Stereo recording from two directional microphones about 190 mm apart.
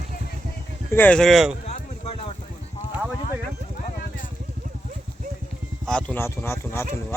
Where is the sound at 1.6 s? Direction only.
35° left (ahead or behind).